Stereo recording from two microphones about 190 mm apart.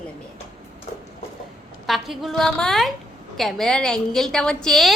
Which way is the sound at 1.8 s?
Centre (ahead or behind).